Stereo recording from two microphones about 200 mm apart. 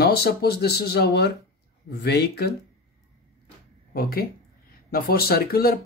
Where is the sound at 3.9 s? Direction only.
50° left (ahead or behind).